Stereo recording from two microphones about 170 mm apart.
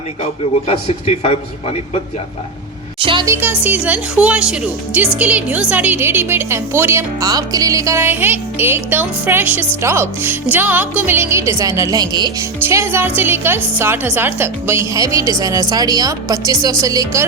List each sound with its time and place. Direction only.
0.7 s speech: 35° left (ahead or behind)
3.0 s music: 30° right (ahead or behind)
3.2 s speech: 15° right (ahead or behind)